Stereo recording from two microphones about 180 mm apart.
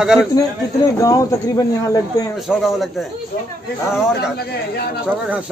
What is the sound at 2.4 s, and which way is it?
Speech, centre (ahead or behind).